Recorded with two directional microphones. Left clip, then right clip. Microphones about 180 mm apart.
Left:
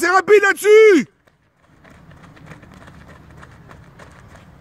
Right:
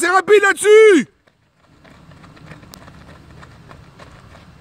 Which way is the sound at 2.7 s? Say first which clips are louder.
Right 2 dB; 5° left (ahead or behind).